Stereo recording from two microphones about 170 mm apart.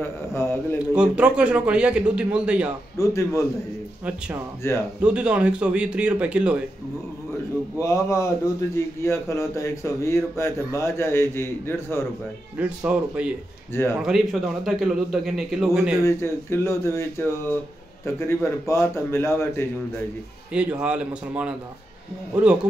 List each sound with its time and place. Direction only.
0.0 s a man's voice: 15° left (ahead or behind)
0.9 s a man's voice: 5° right (ahead or behind)
3.0 s speech: 15° left (ahead or behind)
4.6 s speech: 15° left (ahead or behind)
5.0 s a man's voice: 5° right (ahead or behind)
7.8 s speech: 15° left (ahead or behind)
12.5 s a man's voice: 5° right (ahead or behind)
16.0 s speech: 15° left (ahead or behind)
20.5 s a man's voice: 5° right (ahead or behind)